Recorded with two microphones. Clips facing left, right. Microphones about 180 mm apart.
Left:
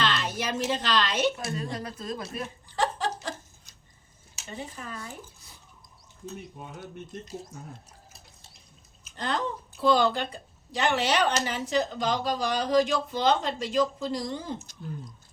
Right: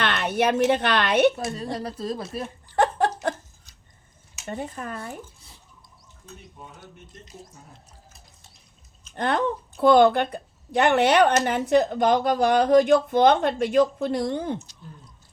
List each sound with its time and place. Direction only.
0.0 s speech: 60° right (ahead or behind)
1.5 s speech: 35° right (ahead or behind)
2.7 s a sound: 60° right (ahead or behind)
4.4 s a woman's voice: 55° right (ahead or behind)
9.1 s a woman's voice: 60° right (ahead or behind)